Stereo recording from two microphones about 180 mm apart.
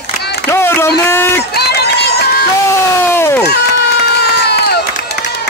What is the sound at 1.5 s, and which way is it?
Run, 65° left (ahead or behind).